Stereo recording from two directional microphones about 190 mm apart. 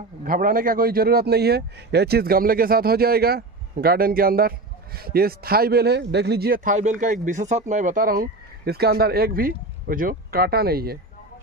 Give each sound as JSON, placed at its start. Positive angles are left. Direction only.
{"t": 0.2, "sound": "a man's voice", "side_deg": -45}